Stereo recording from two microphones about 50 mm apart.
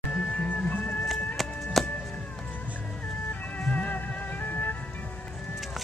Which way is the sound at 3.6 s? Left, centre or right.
Left.